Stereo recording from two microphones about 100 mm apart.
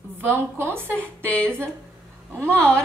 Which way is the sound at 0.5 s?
25° right (ahead or behind).